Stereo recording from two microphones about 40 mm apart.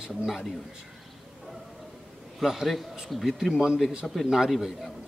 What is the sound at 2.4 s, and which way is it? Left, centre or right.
Speech, centre.